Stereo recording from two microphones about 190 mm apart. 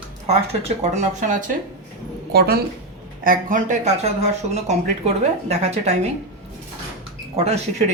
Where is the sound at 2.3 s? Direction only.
55° right (ahead or behind).